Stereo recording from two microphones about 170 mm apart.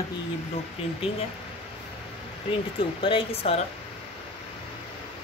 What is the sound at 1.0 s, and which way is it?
Speech, 35° left (ahead or behind).